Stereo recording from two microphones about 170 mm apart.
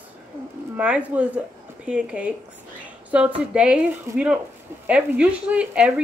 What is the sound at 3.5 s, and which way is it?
Speech, 5° right (ahead or behind).